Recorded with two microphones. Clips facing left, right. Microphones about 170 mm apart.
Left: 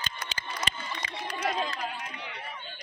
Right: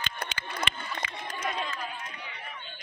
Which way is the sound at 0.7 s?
35° left (ahead or behind).